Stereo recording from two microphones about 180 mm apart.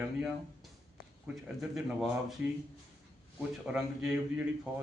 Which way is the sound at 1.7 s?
Centre (ahead or behind).